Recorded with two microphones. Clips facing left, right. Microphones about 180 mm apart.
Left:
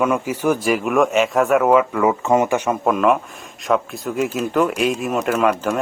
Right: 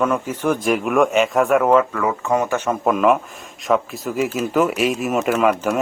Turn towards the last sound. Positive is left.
turn(degrees=-5)  # may be behind; listen again after turning